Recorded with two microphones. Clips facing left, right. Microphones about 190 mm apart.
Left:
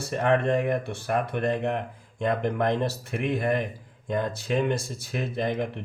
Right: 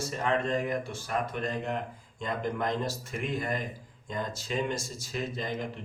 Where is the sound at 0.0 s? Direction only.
60° left (ahead or behind).